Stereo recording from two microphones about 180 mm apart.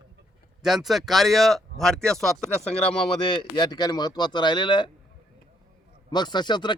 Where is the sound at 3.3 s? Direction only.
25° left (ahead or behind).